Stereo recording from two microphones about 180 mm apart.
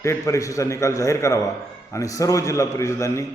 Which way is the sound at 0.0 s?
15° left (ahead or behind).